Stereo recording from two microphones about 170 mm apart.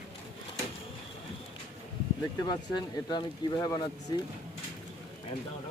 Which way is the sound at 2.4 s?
25° left (ahead or behind).